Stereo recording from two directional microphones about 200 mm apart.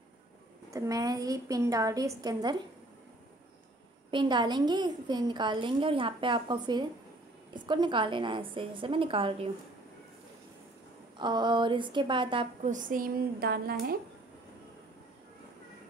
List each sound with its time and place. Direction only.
0.7 s a woman's voice: 15° right (ahead or behind)
4.1 s a woman's voice: 25° right (ahead or behind)
11.1 s a woman's voice: 20° right (ahead or behind)
12.6 s a woman's voice: 40° right (ahead or behind)